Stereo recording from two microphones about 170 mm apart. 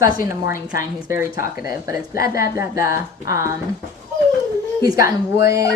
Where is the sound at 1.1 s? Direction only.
15° right (ahead or behind).